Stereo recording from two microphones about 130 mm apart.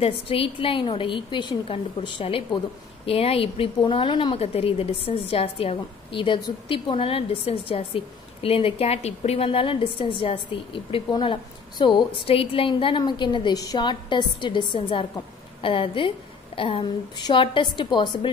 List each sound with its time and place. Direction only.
0.0 s a woman's voice: 45° left (ahead or behind)